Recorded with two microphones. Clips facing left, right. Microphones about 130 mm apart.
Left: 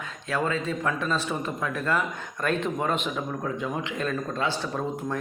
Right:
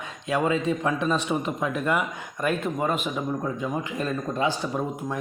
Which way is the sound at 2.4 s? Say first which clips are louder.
Right 1 dB; 5° right (ahead or behind).